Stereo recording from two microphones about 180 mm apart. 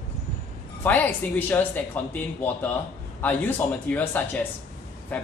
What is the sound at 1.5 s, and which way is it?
Speech, 10° left (ahead or behind).